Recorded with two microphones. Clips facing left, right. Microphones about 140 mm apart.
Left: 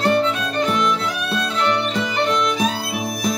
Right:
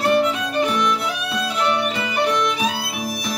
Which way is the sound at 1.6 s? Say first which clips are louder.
Left 1 dB; 10° right (ahead or behind).